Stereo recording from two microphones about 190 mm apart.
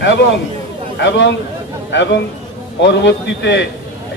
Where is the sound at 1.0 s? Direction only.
70° left (ahead or behind).